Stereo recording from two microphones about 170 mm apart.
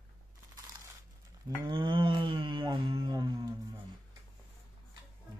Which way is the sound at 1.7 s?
30° right (ahead or behind).